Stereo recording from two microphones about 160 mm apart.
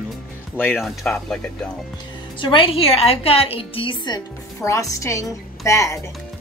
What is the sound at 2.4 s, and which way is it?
A woman's voice, 35° left (ahead or behind).